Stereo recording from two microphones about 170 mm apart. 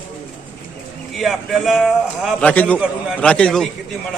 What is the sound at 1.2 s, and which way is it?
A man's voice, centre (ahead or behind).